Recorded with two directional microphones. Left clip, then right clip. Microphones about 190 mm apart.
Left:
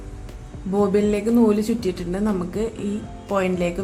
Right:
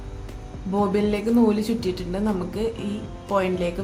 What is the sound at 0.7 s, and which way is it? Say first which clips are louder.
Speech: left 3 dB; 5° left (ahead or behind).